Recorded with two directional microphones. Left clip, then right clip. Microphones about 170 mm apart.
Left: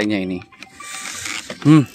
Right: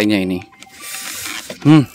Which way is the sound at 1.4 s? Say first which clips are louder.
Right 2 dB; 15° right (ahead or behind).